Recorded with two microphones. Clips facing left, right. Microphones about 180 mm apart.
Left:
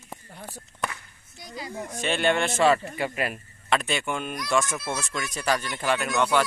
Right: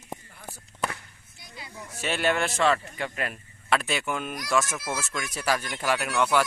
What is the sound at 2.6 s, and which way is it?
Speech, 10° left (ahead or behind).